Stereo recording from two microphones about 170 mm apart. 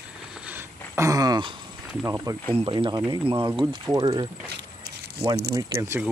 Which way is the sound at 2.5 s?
30° right (ahead or behind).